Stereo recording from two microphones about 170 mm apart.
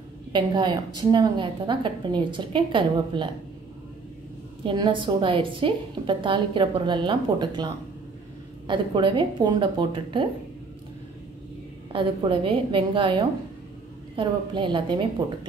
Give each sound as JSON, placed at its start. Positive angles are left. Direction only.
{"t": 0.3, "sound": "a woman's voice", "side_deg": -25}
{"t": 4.6, "sound": "a woman's voice", "side_deg": -30}
{"t": 11.9, "sound": "a woman's voice", "side_deg": -30}